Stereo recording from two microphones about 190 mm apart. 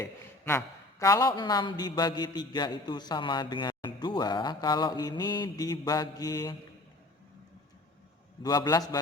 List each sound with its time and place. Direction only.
0.0 s a man's voice: 15° left (ahead or behind)
8.4 s a man's voice: 20° left (ahead or behind)